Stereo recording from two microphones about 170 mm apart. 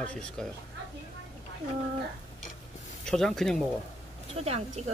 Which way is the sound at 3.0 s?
Centre (ahead or behind).